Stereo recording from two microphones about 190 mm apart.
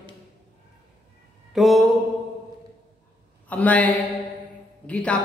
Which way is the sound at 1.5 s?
Centre (ahead or behind).